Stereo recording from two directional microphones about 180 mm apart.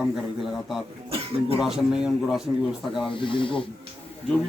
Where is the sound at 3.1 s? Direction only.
30° left (ahead or behind).